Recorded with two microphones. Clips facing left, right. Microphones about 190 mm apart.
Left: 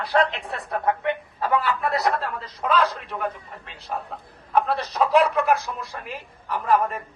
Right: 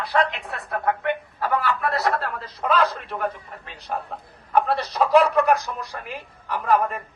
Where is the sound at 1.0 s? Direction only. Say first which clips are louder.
Even; 25° left (ahead or behind).